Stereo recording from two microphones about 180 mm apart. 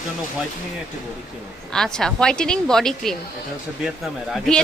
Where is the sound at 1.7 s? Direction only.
5° left (ahead or behind).